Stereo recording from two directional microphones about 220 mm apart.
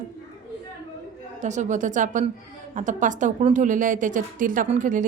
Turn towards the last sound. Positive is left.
turn(degrees=-35)  # may be behind; listen again after turning